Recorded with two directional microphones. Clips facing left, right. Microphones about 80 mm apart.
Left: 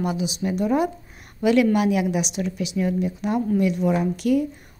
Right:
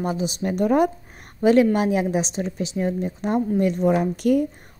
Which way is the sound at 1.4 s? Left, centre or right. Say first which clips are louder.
Right 2 dB; right.